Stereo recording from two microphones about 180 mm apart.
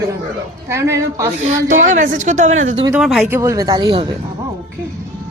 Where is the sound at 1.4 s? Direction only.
45° right (ahead or behind).